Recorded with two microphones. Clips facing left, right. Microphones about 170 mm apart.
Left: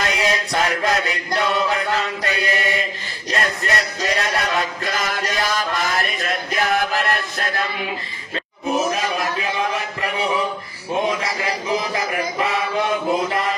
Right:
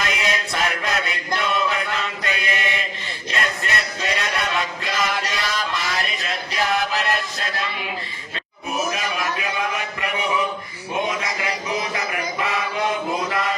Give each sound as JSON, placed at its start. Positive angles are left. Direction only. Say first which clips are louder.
{"t": 0.0, "sound": "chant", "louder": "left 3 dB", "side_deg": 35}
{"t": 3.3, "sound": "music", "louder": "left 3 dB", "side_deg": 35}
{"t": 8.6, "sound": "chant", "louder": "left 4 dB", "side_deg": 30}
{"t": 11.1, "sound": "a sound", "louder": "left 3 dB", "side_deg": 30}